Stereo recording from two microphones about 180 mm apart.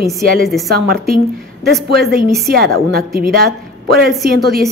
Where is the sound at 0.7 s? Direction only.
55° right (ahead or behind).